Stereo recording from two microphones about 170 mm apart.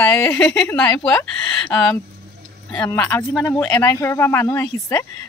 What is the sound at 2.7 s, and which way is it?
Speech, 10° left (ahead or behind).